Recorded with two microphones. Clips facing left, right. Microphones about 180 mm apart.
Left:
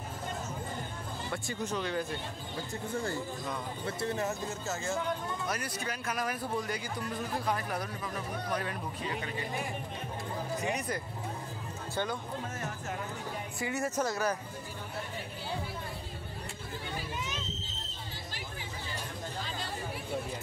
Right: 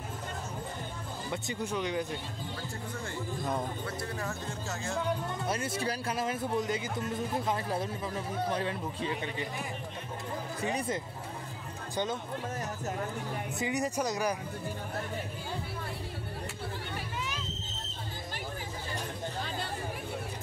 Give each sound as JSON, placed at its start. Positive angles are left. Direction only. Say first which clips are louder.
{"t": 1.3, "sound": "speech", "louder": "right 1 dB", "side_deg": -15}
{"t": 2.9, "sound": "speech", "louder": "left 4 dB", "side_deg": 35}
{"t": 4.5, "sound": "speech", "louder": "left 2 dB", "side_deg": 0}
{"t": 5.5, "sound": "speech", "louder": "right 4 dB", "side_deg": -25}
{"t": 10.6, "sound": "speech", "louder": "right 4 dB", "side_deg": -30}
{"t": 11.9, "sound": "speech", "louder": "right 1 dB", "side_deg": -20}
{"t": 13.6, "sound": "speech", "louder": "right 1 dB", "side_deg": -15}